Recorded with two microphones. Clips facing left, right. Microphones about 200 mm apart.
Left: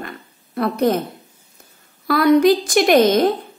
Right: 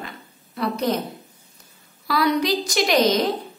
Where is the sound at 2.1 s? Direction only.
50° left (ahead or behind).